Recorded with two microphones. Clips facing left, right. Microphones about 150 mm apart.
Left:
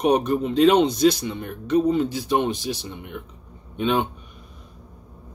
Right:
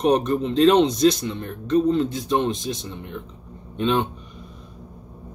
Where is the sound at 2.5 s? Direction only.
70° left (ahead or behind).